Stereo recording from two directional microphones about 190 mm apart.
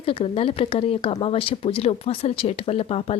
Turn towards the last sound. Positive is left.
turn(degrees=30)  # may be behind; listen again after turning